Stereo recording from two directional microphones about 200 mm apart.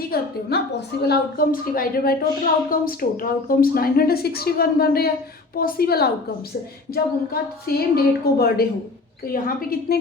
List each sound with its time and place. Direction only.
0.1 s a woman's voice: 50° left (ahead or behind)
7.7 s a woman's voice: 50° left (ahead or behind)